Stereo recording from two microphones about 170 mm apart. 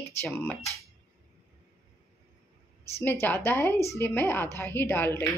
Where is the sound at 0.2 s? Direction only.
15° left (ahead or behind).